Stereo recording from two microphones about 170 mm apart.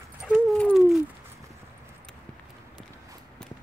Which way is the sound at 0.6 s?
5° left (ahead or behind).